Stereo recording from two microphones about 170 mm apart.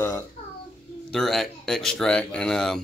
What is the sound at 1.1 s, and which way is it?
Speech, centre (ahead or behind).